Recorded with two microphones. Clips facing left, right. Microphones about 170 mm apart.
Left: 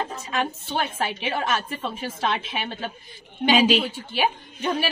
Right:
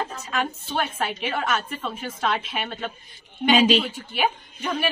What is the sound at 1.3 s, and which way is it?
A woman's voice, 30° left (ahead or behind).